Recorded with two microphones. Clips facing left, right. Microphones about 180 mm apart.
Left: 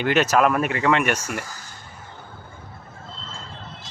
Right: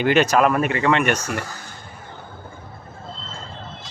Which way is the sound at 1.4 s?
65° right (ahead or behind).